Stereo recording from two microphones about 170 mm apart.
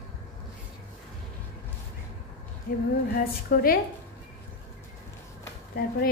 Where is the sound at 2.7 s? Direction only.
55° left (ahead or behind).